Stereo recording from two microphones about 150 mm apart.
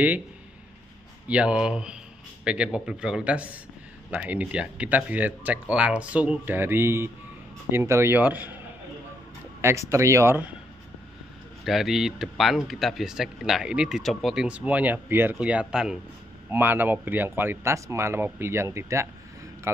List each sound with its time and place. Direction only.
1.2 s speech: 5° right (ahead or behind)
9.6 s speech: 20° right (ahead or behind)
11.6 s speech: centre (ahead or behind); by 19.0 s 20° right (ahead or behind)